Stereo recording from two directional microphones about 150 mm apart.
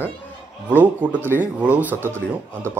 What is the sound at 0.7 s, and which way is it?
Speech, 10° right (ahead or behind).